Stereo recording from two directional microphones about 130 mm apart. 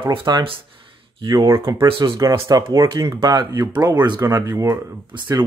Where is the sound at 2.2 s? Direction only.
25° right (ahead or behind).